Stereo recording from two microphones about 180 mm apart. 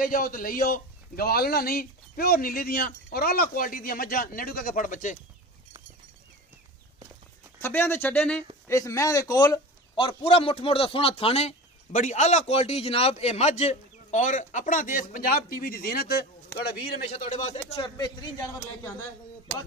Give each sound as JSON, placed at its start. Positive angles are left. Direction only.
{"t": 0.0, "sound": "a man's voice", "side_deg": 50}
{"t": 7.6, "sound": "a man's voice", "side_deg": 10}
{"t": 17.1, "sound": "a man's voice", "side_deg": 35}
{"t": 17.8, "sound": "a man's voice", "side_deg": 20}